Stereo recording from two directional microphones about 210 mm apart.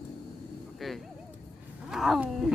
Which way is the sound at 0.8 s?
Centre (ahead or behind).